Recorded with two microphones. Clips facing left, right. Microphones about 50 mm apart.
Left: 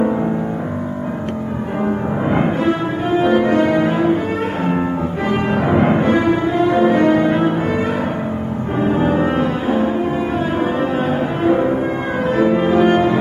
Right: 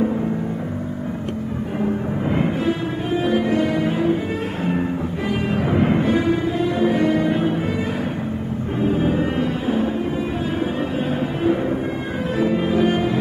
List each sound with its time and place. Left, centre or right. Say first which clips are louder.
2.3 s music: left 4 dB; left
5.5 s music: left 4 dB; left
5.9 s cello: left 4 dB; left
8.7 s music: left 4 dB; left
12.4 s music: left 4 dB; left